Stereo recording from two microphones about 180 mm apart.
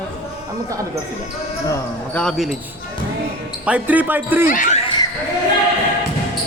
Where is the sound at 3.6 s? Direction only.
10° right (ahead or behind).